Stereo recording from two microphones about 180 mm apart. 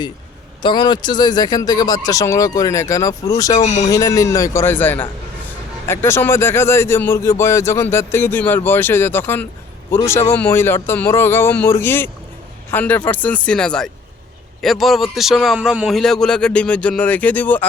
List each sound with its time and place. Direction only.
0.6 s speech: 25° left (ahead or behind); by 17.7 s 10° left (ahead or behind)